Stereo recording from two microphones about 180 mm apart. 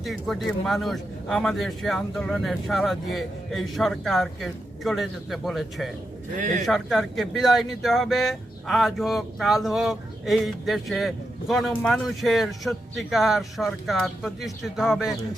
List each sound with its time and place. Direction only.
0.0 s speech: centre (ahead or behind)
6.3 s speech: 45° right (ahead or behind)
6.7 s speech: centre (ahead or behind)